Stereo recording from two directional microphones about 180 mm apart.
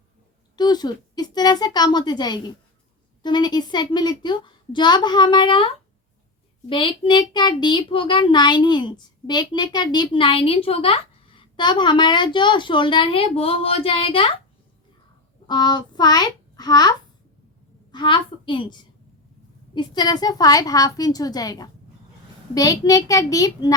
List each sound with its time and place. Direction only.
0.5 s a child's voice: 25° left (ahead or behind)
15.4 s a child's voice: 25° left (ahead or behind)
17.9 s a child's voice: 25° left (ahead or behind)